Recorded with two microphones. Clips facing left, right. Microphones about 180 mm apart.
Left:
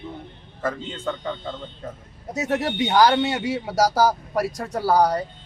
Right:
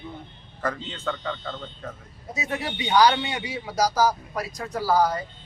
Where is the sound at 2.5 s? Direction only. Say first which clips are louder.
Left 4 dB; 55° left (ahead or behind).